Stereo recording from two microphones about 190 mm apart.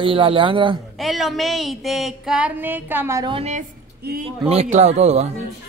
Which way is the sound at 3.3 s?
35° right (ahead or behind).